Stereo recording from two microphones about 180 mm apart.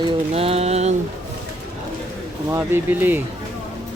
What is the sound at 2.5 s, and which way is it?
Speech, 15° right (ahead or behind).